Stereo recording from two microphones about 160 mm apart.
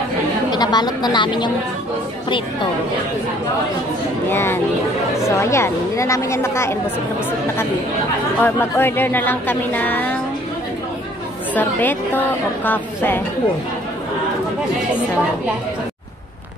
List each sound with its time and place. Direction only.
0.5 s a woman's voice: 25° left (ahead or behind)
4.3 s speech: 15° left (ahead or behind)
8.4 s speech: 15° left (ahead or behind)
11.5 s speech: 10° left (ahead or behind)